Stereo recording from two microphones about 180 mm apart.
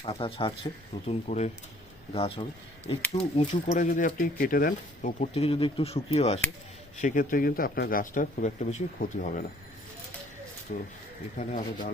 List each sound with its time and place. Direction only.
0.0 s a man's voice: 30° left (ahead or behind); by 5.3 s 50° left (ahead or behind)
5.3 s speech: 30° left (ahead or behind)
7.0 s a man's voice: 50° left (ahead or behind)
10.7 s a man's voice: 45° left (ahead or behind)